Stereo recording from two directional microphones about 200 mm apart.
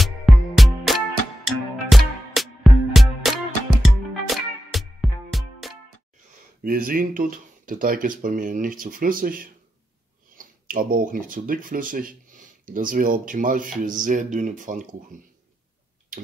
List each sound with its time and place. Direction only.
0.0 s music: centre (ahead or behind)
6.6 s speech: 45° right (ahead or behind)